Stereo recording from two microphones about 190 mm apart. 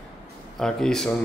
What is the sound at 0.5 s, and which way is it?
Speech, centre (ahead or behind).